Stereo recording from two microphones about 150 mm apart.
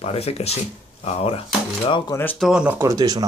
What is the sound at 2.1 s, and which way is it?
Speech, 15° left (ahead or behind).